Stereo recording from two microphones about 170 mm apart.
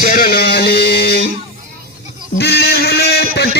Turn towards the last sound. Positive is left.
turn(degrees=65)  # may be behind; listen again after turning